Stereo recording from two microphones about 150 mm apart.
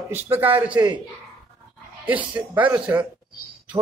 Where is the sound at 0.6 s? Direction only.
10° right (ahead or behind).